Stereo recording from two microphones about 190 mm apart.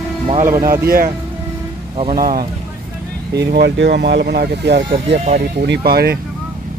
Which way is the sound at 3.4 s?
60° right (ahead or behind).